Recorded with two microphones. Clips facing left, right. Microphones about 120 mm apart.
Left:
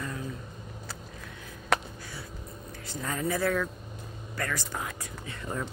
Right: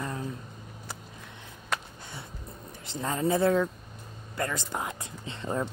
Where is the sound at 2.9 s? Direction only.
25° right (ahead or behind).